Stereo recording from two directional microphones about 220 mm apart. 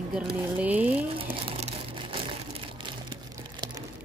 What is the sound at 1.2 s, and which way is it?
Crumpling, 25° right (ahead or behind).